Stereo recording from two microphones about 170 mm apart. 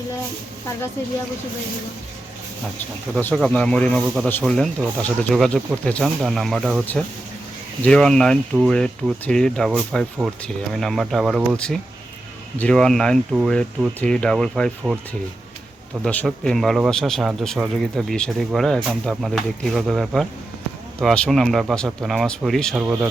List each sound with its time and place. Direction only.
3.2 s speech: 5° left (ahead or behind)
7.9 s speech: 5° left (ahead or behind)
16.0 s speech: 5° left (ahead or behind)